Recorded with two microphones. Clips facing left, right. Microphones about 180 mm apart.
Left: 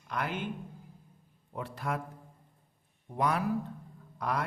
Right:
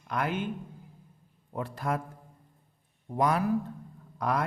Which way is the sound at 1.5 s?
45° right (ahead or behind).